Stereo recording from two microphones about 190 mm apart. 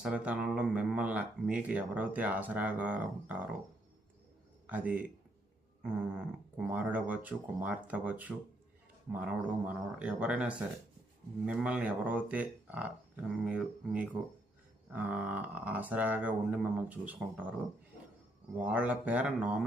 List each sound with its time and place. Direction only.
0.0 s speech: 5° right (ahead or behind)
4.6 s speech: 10° right (ahead or behind)
18.5 s speech: 5° right (ahead or behind)